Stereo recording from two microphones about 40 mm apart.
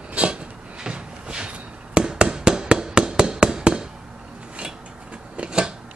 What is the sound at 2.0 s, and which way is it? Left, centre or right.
Hammer, right.